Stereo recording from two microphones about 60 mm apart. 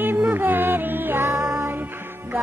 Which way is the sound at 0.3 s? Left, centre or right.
Right.